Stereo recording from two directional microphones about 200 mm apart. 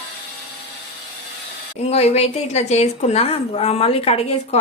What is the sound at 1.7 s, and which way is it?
A woman's voice, 30° left (ahead or behind).